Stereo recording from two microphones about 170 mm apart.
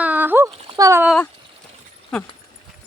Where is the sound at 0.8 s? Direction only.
15° right (ahead or behind).